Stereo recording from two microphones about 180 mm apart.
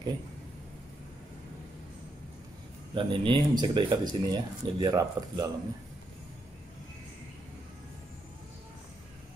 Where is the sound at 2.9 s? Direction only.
25° right (ahead or behind).